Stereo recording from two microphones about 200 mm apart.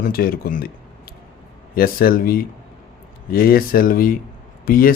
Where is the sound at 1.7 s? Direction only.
50° left (ahead or behind).